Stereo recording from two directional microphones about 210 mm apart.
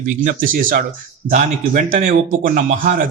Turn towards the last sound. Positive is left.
turn(degrees=-40)  # may be behind; listen again after turning